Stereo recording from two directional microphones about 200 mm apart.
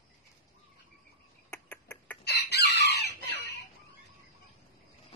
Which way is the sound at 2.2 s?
55° left (ahead or behind).